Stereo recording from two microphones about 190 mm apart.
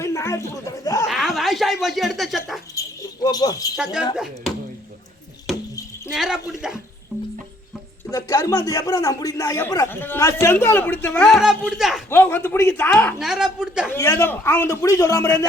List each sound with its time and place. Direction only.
0.0 s speech: 15° left (ahead or behind)
1.0 s a sound: centre (ahead or behind)
2.7 s jingle bell: 20° left (ahead or behind)
4.1 s speech: 5° right (ahead or behind)
6.1 s speech: 5° right (ahead or behind)
8.1 s speech: 15° left (ahead or behind); by 12.0 s centre (ahead or behind)
12.1 s speech: 10° left (ahead or behind)
13.1 s speech: centre (ahead or behind)
13.9 s speech: 15° left (ahead or behind)